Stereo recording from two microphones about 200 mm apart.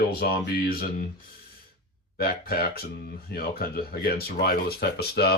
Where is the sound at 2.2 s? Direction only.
50° left (ahead or behind).